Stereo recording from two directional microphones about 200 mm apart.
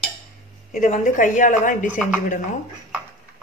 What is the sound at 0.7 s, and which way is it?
A woman's voice, 35° left (ahead or behind).